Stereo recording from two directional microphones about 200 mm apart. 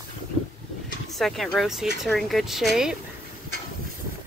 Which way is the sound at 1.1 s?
Centre (ahead or behind).